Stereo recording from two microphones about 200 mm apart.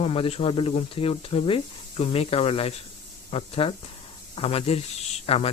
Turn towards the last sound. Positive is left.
turn(degrees=30)  # may be behind; listen again after turning